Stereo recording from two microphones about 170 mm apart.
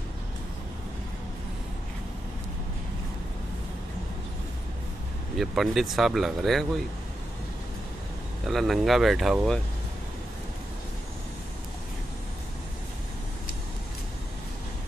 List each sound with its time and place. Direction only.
5.4 s speech: centre (ahead or behind)
8.5 s speech: centre (ahead or behind)